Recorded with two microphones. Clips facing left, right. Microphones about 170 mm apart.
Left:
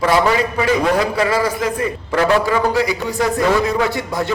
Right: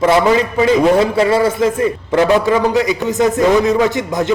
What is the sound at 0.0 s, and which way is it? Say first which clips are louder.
A man's voice: right 3 dB; 25° right (ahead or behind).